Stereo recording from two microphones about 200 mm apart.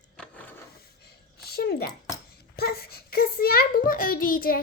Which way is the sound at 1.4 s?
50° left (ahead or behind).